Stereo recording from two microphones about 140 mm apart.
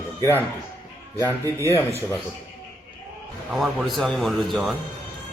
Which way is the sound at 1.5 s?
20° left (ahead or behind).